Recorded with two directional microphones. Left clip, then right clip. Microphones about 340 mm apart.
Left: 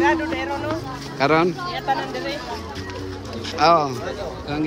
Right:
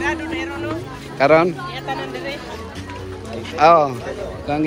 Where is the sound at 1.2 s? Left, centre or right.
Centre.